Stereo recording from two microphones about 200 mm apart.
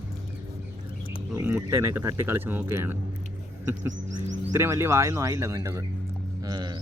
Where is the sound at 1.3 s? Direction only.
10° right (ahead or behind).